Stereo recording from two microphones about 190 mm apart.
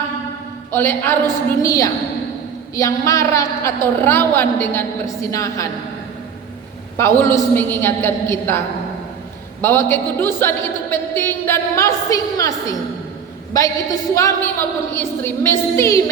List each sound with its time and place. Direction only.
0.7 s speech: 10° left (ahead or behind)
6.9 s speech: 15° left (ahead or behind)